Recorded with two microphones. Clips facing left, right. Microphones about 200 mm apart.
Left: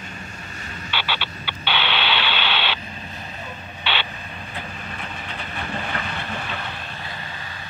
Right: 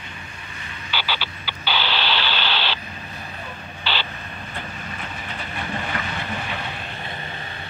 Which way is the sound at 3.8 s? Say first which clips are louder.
Left 1 dB; centre (ahead or behind).